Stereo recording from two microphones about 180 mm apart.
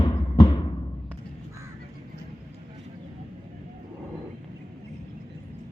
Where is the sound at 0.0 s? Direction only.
25° left (ahead or behind).